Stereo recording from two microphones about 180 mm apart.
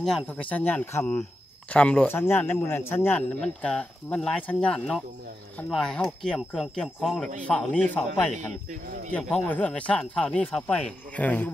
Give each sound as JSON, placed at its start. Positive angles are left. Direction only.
{"t": 0.0, "sound": "speech", "side_deg": 5}
{"t": 8.3, "sound": "speech", "side_deg": -40}
{"t": 9.1, "sound": "speech", "side_deg": 10}